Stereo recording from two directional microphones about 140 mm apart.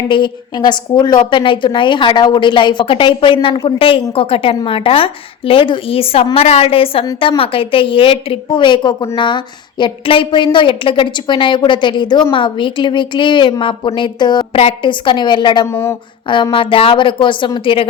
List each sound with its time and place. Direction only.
0.1 s a woman's voice: 35° left (ahead or behind)
15.6 s speech: 20° left (ahead or behind)
16.3 s a woman's voice: 35° left (ahead or behind)